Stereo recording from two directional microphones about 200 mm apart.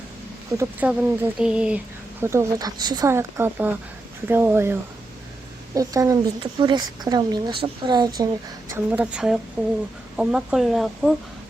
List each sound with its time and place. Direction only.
0.5 s a woman's voice: 15° right (ahead or behind)
8.7 s speech: 5° right (ahead or behind)